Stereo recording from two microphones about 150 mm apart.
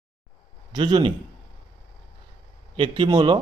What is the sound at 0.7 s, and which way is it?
Speech, 30° right (ahead or behind).